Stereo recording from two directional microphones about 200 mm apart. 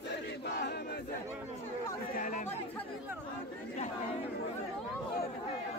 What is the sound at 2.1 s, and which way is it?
Chatter, 40° left (ahead or behind).